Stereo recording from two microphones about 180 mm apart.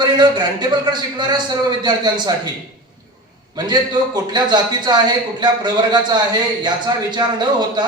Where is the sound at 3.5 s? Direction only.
25° right (ahead or behind).